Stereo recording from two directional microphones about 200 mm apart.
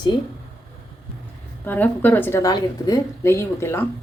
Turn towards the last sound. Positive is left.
turn(degrees=15)  # may be behind; listen again after turning